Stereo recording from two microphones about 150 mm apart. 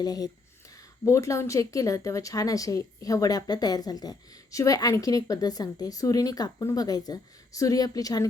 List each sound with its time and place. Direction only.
0.0 s speech: 25° left (ahead or behind)